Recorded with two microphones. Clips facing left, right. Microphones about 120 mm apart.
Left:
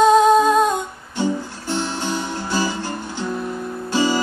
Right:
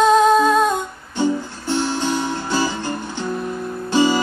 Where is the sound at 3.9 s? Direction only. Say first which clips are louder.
Right 3 dB; 20° right (ahead or behind).